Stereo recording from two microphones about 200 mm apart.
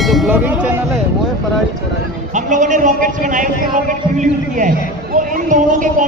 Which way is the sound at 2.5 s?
40° right (ahead or behind).